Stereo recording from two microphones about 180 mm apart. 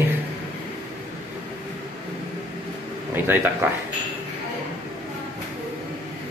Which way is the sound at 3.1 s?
10° right (ahead or behind).